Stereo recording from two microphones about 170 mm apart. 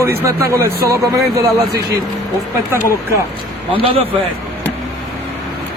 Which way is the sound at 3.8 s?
35° right (ahead or behind).